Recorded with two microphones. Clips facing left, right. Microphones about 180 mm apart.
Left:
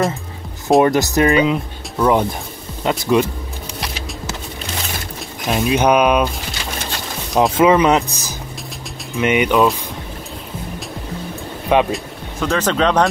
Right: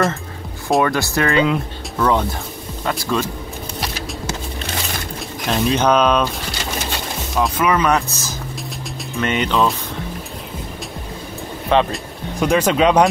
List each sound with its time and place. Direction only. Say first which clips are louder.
0.7 s speech: left 4 dB; 20° left (ahead or behind)
5.5 s speech: left 1 dB; 10° left (ahead or behind)
7.3 s speech: left 5 dB; 25° left (ahead or behind)
11.7 s speech: left 1 dB; 10° left (ahead or behind)
12.4 s speech: right 2 dB; 15° right (ahead or behind)